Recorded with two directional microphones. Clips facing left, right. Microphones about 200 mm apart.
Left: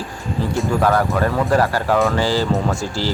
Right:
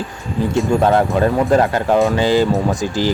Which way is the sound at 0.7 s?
25° right (ahead or behind).